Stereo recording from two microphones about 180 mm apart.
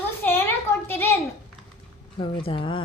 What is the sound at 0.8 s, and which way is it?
Speech, 15° left (ahead or behind).